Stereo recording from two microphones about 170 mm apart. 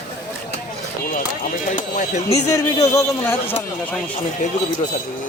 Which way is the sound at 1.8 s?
45° left (ahead or behind).